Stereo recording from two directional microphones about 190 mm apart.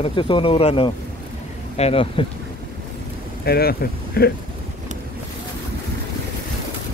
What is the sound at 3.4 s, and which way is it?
Speech, 55° left (ahead or behind).